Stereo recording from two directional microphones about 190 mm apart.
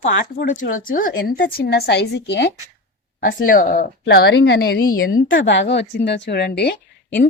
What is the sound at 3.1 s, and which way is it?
Speech, 50° left (ahead or behind).